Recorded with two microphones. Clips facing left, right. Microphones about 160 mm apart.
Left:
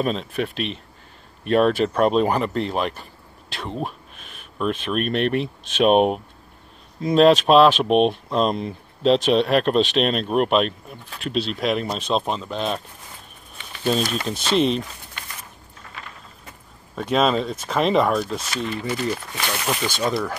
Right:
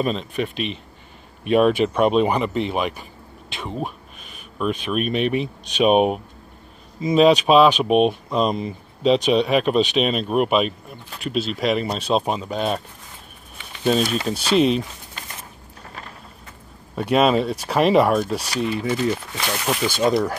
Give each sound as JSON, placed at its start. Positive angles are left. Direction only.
{"t": 0.0, "sound": "speech", "side_deg": 0}
{"t": 13.8, "sound": "speech", "side_deg": 0}
{"t": 15.8, "sound": "a sound", "side_deg": -35}
{"t": 16.9, "sound": "speech", "side_deg": -5}